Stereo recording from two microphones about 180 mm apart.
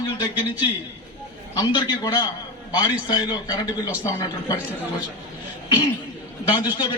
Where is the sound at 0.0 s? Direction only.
25° left (ahead or behind).